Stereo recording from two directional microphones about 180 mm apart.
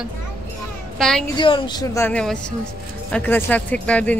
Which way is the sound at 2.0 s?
5° left (ahead or behind).